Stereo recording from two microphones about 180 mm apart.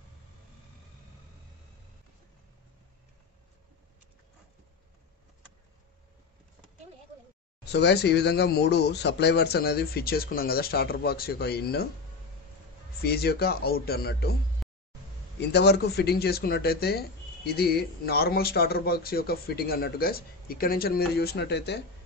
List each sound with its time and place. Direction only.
7.6 s speech: 65° left (ahead or behind)
13.0 s speech: 60° left (ahead or behind)
14.6 s a sound: centre (ahead or behind)
15.5 s speech: 65° left (ahead or behind)